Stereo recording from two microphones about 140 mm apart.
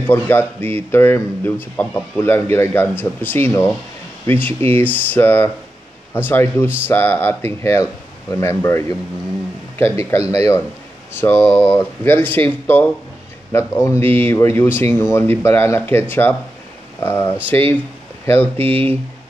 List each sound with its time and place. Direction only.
0.0 s speech: 15° left (ahead or behind)
18.6 s speech: 45° right (ahead or behind)